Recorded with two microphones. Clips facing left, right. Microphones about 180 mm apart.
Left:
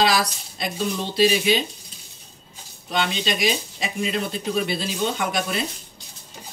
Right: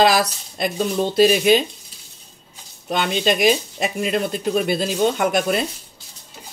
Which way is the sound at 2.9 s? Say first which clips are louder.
Right 5 dB; 50° right (ahead or behind).